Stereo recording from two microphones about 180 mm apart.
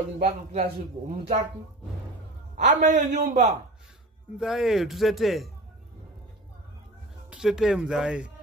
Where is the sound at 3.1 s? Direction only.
40° right (ahead or behind).